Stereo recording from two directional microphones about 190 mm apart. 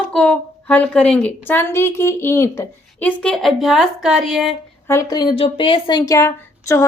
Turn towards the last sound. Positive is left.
turn(degrees=15)  # may be behind; listen again after turning